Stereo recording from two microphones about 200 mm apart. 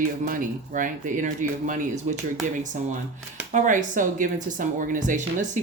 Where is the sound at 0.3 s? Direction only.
45° right (ahead or behind).